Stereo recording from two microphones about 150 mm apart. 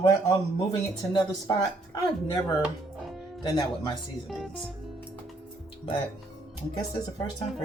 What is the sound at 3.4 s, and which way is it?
Speech, 30° left (ahead or behind).